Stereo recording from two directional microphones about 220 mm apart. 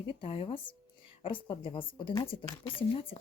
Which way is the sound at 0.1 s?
25° left (ahead or behind).